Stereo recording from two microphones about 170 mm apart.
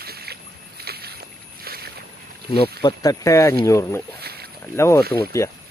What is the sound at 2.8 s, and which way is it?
Speech, 20° left (ahead or behind).